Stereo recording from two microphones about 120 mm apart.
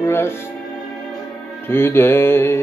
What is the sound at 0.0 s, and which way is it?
Music, 20° left (ahead or behind).